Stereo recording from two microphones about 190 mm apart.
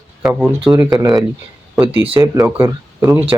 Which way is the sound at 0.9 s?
20° right (ahead or behind).